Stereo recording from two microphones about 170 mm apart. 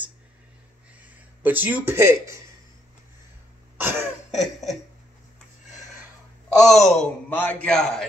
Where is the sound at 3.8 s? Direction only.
10° right (ahead or behind).